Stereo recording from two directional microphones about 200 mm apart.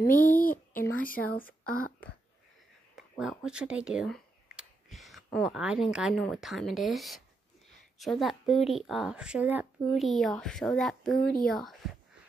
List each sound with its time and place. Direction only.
0.0 s speech: 45° left (ahead or behind)
3.0 s a sound: centre (ahead or behind)
3.4 s speech: 5° right (ahead or behind)